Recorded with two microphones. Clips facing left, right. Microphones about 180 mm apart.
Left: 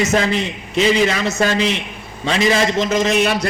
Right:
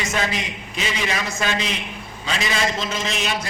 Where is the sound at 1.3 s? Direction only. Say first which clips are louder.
Left 7 dB; 40° left (ahead or behind).